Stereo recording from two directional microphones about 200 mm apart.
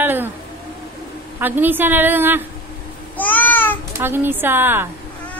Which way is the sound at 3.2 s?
10° left (ahead or behind).